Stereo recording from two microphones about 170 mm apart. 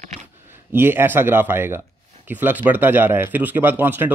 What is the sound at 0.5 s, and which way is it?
Speech, 15° right (ahead or behind).